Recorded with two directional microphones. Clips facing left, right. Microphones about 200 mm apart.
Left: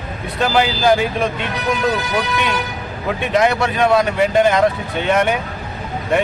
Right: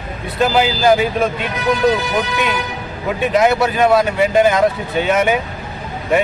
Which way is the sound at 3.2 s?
Centre (ahead or behind).